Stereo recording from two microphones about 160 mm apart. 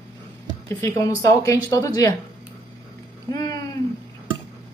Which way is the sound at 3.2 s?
25° left (ahead or behind).